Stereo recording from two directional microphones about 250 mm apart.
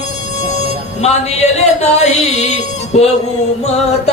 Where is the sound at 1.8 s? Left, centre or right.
Left.